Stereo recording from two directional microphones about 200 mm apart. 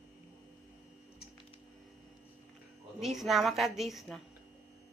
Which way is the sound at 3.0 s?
Centre (ahead or behind).